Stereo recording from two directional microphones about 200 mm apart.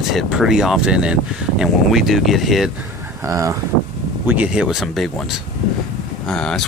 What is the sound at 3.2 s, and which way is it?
Speech, 15° right (ahead or behind).